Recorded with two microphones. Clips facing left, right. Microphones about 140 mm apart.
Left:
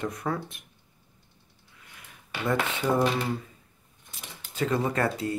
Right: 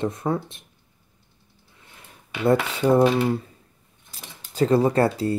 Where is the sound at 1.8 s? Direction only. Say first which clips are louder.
Right 2 dB; 30° right (ahead or behind).